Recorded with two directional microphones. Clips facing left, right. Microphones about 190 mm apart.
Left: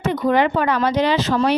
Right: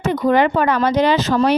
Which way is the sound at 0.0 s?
45° right (ahead or behind).